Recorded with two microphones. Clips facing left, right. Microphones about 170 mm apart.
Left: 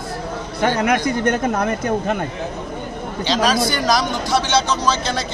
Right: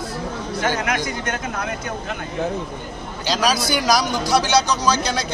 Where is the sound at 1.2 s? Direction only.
55° left (ahead or behind).